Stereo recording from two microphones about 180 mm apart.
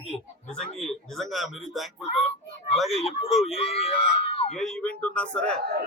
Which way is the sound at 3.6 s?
35° left (ahead or behind).